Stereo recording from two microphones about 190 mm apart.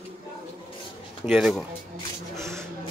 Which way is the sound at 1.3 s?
Centre (ahead or behind).